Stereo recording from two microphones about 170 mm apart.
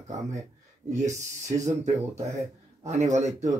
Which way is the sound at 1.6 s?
45° right (ahead or behind).